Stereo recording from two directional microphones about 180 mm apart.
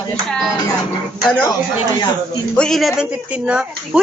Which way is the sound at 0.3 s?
Centre (ahead or behind).